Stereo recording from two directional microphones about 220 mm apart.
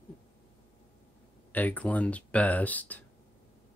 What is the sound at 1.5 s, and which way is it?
Speech, 5° left (ahead or behind).